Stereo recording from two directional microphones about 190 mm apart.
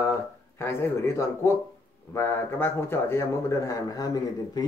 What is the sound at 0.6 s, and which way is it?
Speech, 15° left (ahead or behind).